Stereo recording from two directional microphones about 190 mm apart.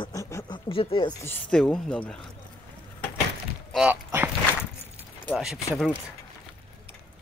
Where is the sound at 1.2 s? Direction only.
10° left (ahead or behind).